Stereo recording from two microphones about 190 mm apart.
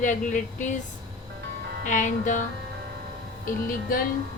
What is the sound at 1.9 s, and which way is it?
Speech, 40° left (ahead or behind).